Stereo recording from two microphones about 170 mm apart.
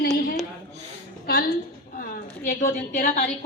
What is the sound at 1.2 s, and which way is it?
Speech, 70° left (ahead or behind).